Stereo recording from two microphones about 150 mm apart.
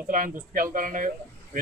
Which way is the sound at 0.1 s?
65° right (ahead or behind).